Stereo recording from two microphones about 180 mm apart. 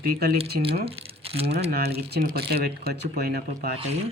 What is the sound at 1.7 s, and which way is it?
Speech, 65° right (ahead or behind).